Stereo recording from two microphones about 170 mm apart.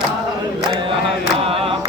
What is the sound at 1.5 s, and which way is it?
Chant, 35° right (ahead or behind).